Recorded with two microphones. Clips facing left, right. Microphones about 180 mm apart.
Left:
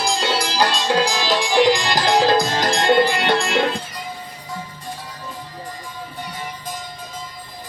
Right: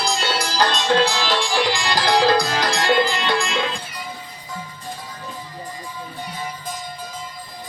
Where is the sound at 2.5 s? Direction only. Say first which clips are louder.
Left 2 dB; 45° left (ahead or behind).